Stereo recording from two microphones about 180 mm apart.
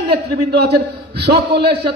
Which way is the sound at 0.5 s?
65° right (ahead or behind).